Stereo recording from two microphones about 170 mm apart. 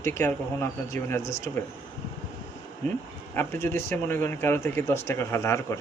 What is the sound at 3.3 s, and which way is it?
Speech, 15° left (ahead or behind).